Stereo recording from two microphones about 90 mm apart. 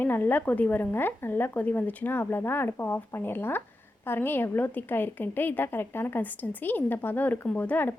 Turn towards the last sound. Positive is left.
turn(degrees=20)  # may be behind; listen again after turning